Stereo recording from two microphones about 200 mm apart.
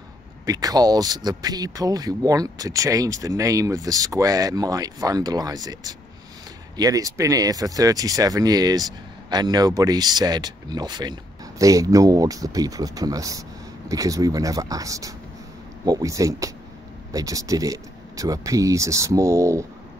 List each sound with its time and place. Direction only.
0.5 s speech: 20° right (ahead or behind)